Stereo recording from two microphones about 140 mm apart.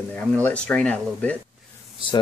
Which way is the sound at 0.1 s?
10° left (ahead or behind).